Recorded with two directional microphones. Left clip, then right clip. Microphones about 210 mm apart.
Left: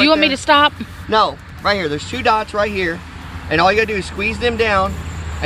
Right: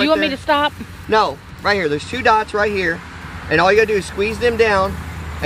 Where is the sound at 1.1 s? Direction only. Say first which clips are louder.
Left 1 dB; 20° right (ahead or behind).